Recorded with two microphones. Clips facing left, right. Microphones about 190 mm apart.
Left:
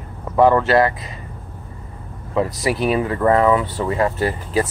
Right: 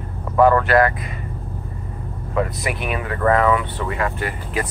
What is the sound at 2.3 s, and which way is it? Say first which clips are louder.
Speech: left 3 dB; 30° left (ahead or behind).